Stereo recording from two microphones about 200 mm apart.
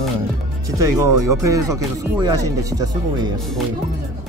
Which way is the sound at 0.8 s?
15° right (ahead or behind).